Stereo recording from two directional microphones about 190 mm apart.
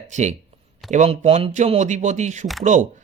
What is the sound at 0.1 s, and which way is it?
Speech, 40° right (ahead or behind).